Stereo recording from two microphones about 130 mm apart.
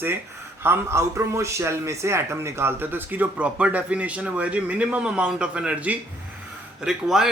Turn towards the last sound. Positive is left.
turn(degrees=-5)  # may be behind; listen again after turning